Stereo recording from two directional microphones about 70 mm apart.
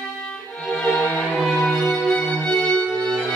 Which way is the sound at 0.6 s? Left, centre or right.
Centre.